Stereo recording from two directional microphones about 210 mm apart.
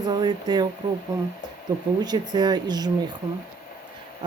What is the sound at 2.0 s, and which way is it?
Speech, 20° right (ahead or behind).